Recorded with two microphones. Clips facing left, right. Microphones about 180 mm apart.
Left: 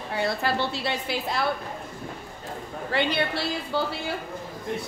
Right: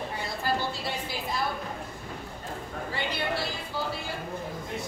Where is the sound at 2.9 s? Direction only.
70° left (ahead or behind).